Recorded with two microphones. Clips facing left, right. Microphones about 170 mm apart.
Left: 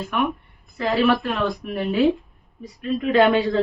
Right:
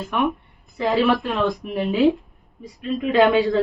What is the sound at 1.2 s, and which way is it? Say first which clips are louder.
Speech: right 2 dB; 20° right (ahead or behind).